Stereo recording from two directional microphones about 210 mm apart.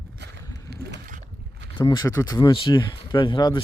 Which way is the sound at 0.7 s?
45° right (ahead or behind).